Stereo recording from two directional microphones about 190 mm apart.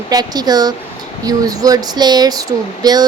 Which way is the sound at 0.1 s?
20° right (ahead or behind).